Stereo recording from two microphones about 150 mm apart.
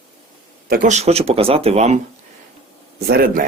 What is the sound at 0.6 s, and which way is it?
Speech, 80° right.